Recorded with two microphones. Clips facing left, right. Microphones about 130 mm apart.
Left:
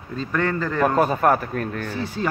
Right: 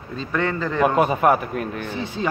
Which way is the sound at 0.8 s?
10° right (ahead or behind).